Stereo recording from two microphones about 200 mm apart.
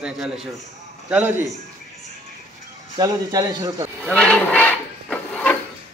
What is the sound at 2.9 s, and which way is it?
Speech, 20° right (ahead or behind).